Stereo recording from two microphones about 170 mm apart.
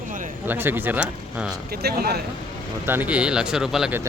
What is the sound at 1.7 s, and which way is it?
Speech, 65° right (ahead or behind).